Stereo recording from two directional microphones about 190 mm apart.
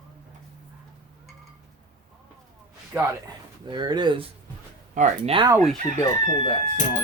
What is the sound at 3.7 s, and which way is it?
Speech, 25° right (ahead or behind).